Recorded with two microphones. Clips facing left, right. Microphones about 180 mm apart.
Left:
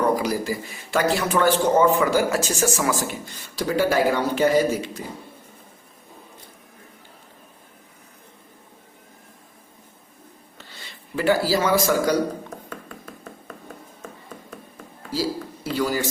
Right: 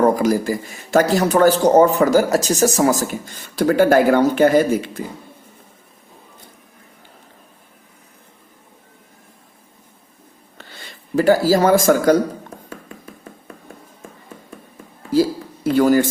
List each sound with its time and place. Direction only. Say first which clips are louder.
0.0 s a man's voice: right 6 dB; 45° right (ahead or behind)
11.1 s a man's voice: right 6 dB; 40° right (ahead or behind)
15.1 s speech: right 9 dB; 55° right (ahead or behind)